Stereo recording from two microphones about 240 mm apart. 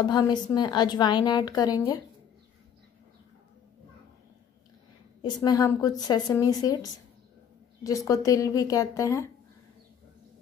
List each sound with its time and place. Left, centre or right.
0.0 s a woman's voice: centre
5.2 s a woman's voice: centre